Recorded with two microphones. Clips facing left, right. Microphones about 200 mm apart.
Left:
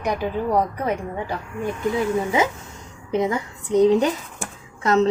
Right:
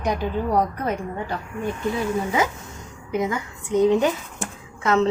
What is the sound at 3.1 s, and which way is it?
A woman's voice, 30° left (ahead or behind).